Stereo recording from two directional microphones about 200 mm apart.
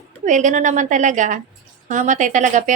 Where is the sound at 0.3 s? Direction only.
40° right (ahead or behind).